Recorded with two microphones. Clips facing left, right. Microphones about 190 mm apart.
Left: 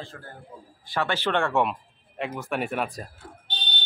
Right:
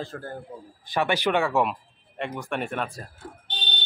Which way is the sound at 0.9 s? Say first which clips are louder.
Right 2 dB; 15° right (ahead or behind).